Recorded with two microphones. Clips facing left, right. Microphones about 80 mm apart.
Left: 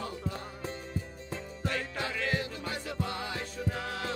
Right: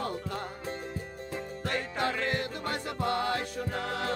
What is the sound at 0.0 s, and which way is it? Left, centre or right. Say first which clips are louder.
Music: right 3 dB; right.